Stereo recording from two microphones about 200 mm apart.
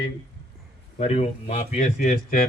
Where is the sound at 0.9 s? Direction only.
30° left (ahead or behind).